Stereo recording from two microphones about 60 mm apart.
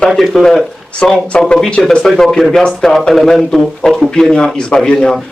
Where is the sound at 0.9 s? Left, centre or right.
Centre.